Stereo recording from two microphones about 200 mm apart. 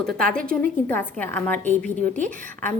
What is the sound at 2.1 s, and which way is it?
Speech, 40° right (ahead or behind).